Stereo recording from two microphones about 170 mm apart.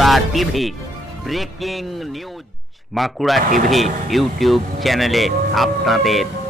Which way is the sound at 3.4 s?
55° right (ahead or behind).